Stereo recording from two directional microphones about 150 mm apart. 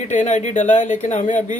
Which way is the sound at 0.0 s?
50° left (ahead or behind).